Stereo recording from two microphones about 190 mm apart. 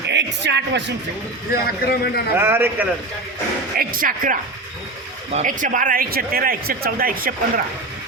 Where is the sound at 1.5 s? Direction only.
55° left (ahead or behind).